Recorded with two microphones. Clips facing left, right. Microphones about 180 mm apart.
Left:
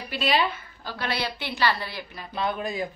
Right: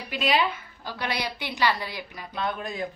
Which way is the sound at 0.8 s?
15° right (ahead or behind).